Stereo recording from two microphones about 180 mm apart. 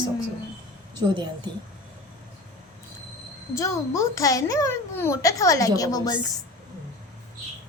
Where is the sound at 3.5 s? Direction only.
15° left (ahead or behind).